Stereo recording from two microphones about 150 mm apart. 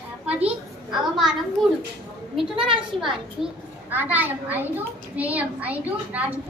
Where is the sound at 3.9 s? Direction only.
10° right (ahead or behind).